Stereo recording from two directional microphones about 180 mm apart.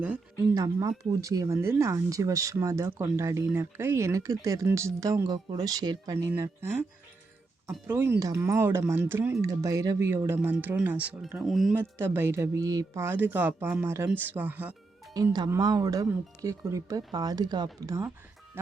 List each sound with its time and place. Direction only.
0.5 s speech: 20° right (ahead or behind)
7.9 s speech: 10° right (ahead or behind)
11.8 s speech: 10° right (ahead or behind)
15.1 s speech: 20° right (ahead or behind)
18.5 s music: 10° right (ahead or behind)